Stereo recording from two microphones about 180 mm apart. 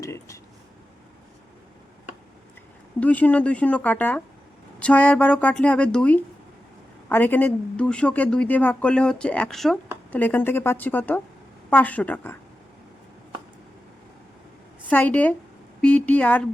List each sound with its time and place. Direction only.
0.0 s a sound: 15° left (ahead or behind)
3.0 s speech: 10° left (ahead or behind)
14.8 s speech: 10° left (ahead or behind)